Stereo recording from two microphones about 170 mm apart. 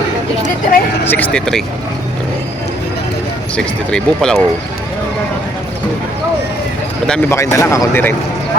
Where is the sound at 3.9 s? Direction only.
5° left (ahead or behind).